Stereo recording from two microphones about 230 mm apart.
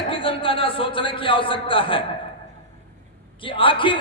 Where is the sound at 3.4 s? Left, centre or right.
Left.